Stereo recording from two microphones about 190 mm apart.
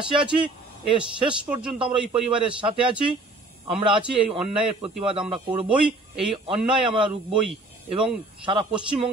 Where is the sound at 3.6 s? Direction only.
25° right (ahead or behind).